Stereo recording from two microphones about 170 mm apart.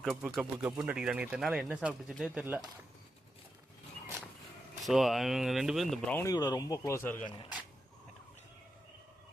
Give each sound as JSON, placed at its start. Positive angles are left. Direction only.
{"t": 0.0, "sound": "speech", "side_deg": 0}
{"t": 4.8, "sound": "speech", "side_deg": 0}
{"t": 6.1, "sound": "speech", "side_deg": 20}